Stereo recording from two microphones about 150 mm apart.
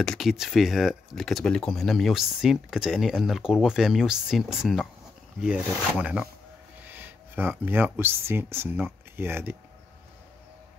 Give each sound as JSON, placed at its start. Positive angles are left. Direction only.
{"t": 0.0, "sound": "speech", "side_deg": 0}
{"t": 5.9, "sound": "speech", "side_deg": -5}